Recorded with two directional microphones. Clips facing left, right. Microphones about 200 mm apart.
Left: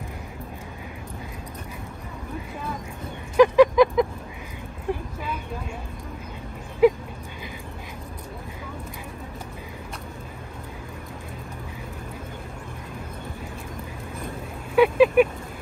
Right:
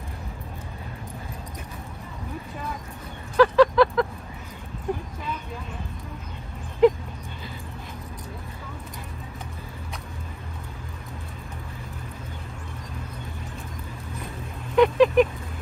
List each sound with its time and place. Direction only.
3.3 s a sound: 15° left (ahead or behind)
6.8 s dog: 10° left (ahead or behind)
14.8 s vehicle: 10° left (ahead or behind)